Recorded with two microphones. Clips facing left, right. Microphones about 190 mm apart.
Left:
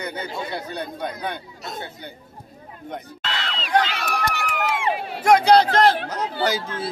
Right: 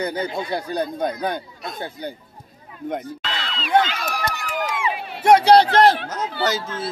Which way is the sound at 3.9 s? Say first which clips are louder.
Left 1 dB; 65° left (ahead or behind).